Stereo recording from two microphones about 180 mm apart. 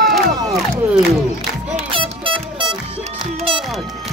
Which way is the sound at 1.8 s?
30° right (ahead or behind).